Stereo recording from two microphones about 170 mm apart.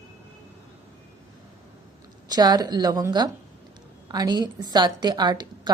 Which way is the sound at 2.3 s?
25° right (ahead or behind).